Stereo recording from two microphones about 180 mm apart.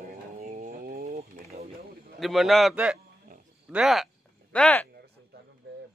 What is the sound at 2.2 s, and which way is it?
A man's voice, centre (ahead or behind).